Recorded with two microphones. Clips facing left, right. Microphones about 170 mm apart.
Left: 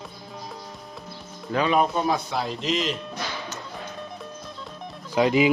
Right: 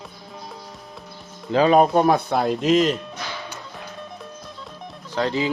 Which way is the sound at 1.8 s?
55° right (ahead or behind).